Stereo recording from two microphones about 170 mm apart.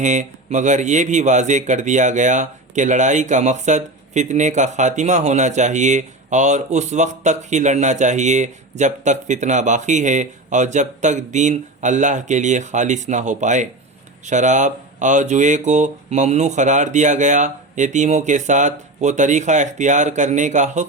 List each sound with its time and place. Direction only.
0.0 s speech: 45° right (ahead or behind)